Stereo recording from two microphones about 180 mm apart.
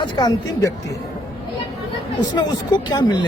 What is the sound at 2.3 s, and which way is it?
Speech, 25° left (ahead or behind).